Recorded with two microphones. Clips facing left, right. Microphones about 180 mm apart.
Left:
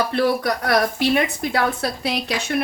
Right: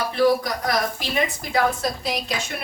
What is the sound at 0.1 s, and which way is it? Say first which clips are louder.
Speech: even; 65° left (ahead or behind).